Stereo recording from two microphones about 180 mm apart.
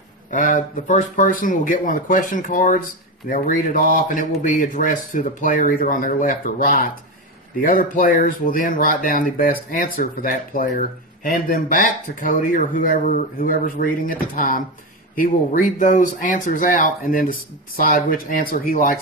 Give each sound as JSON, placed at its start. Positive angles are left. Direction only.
{"t": 0.3, "sound": "speech", "side_deg": 45}